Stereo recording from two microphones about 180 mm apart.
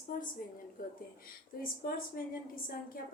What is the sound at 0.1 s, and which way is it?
Speech, 50° left (ahead or behind).